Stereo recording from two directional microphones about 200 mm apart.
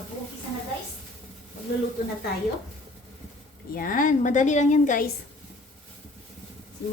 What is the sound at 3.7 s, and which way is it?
A woman's voice, 45° left (ahead or behind).